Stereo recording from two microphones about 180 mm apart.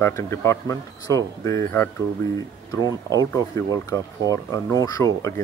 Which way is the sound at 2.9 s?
20° right (ahead or behind).